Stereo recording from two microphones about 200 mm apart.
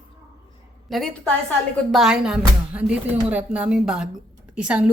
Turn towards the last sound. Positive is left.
turn(degrees=-5)  # may be behind; listen again after turning